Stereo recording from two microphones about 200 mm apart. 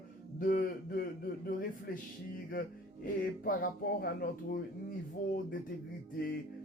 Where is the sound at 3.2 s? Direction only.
50° left (ahead or behind).